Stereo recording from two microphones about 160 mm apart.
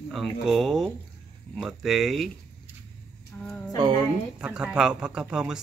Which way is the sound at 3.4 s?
Centre (ahead or behind).